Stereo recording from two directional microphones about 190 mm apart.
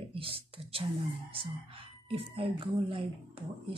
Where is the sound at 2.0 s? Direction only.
30° right (ahead or behind).